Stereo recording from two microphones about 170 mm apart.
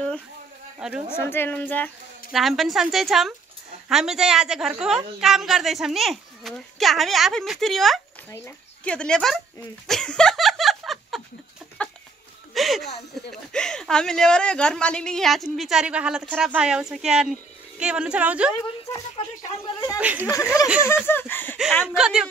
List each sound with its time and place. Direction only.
0.7 s speech: 5° right (ahead or behind)
1.0 s a woman's voice: 15° left (ahead or behind)
2.3 s a woman's voice: centre (ahead or behind)
9.8 s snicker: 5° left (ahead or behind)
11.8 s chicken: 10° left (ahead or behind)
12.5 s a sound: centre (ahead or behind)
13.3 s a woman's voice: 5° left (ahead or behind)
18.9 s speech: 20° left (ahead or behind)
20.0 s speech: 10° right (ahead or behind)
20.8 s a woman's voice: 15° left (ahead or behind)
21.8 s a woman's voice: 5° right (ahead or behind)